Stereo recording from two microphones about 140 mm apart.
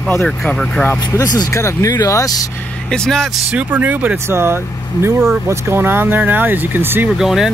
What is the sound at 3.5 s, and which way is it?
Speech, 10° right (ahead or behind).